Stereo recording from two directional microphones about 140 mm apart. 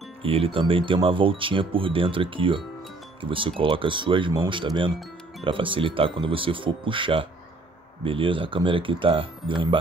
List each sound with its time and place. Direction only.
0.2 s speech: 40° right (ahead or behind)